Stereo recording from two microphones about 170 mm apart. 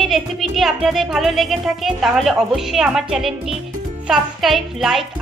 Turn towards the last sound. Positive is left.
turn(degrees=0)  # may be behind; listen again after turning